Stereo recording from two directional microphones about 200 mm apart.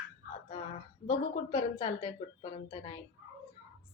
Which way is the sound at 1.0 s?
30° left (ahead or behind).